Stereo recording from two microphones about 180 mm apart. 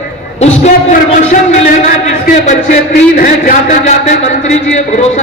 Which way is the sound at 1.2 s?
45° left (ahead or behind).